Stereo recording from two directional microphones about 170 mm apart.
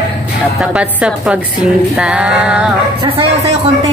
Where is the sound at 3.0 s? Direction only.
35° right (ahead or behind).